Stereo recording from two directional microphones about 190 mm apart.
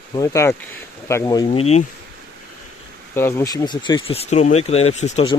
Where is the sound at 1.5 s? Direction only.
30° left (ahead or behind).